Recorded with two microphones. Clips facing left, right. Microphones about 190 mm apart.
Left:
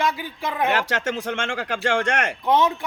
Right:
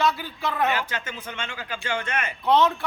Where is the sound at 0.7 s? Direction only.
80° left.